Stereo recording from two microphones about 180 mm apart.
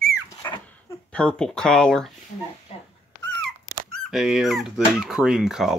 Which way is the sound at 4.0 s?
Centre (ahead or behind).